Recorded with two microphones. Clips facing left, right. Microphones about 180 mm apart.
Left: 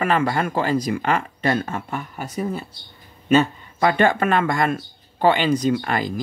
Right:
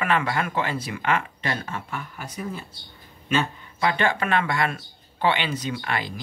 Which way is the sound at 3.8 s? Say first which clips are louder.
Left 6 dB; 50° left (ahead or behind).